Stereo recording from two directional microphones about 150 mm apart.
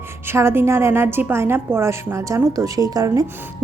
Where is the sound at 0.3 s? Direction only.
15° right (ahead or behind).